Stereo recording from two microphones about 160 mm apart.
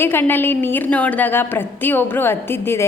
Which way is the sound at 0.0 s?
15° left (ahead or behind).